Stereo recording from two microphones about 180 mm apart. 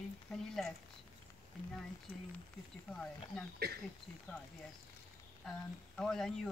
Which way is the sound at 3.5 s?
60° right (ahead or behind).